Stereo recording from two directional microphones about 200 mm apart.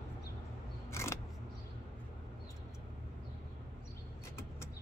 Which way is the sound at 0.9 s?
15° left (ahead or behind).